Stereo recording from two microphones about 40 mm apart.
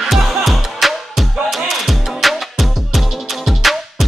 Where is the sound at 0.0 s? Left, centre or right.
Centre.